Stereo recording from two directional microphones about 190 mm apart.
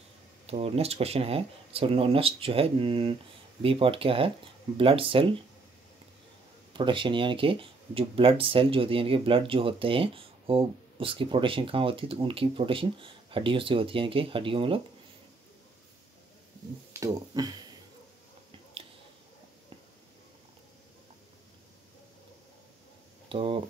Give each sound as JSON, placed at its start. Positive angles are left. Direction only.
{"t": 0.5, "sound": "speech", "side_deg": -30}
{"t": 6.7, "sound": "speech", "side_deg": -25}
{"t": 16.9, "sound": "speech", "side_deg": -20}
{"t": 23.2, "sound": "speech", "side_deg": -25}